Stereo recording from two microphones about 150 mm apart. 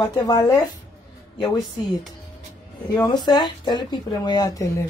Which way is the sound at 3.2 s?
30° left (ahead or behind).